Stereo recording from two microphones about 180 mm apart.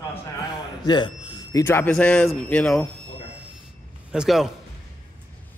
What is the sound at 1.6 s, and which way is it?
A man's voice, 10° left (ahead or behind).